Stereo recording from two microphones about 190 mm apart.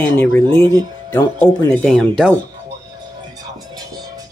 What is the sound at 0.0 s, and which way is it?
Speech, 10° left (ahead or behind).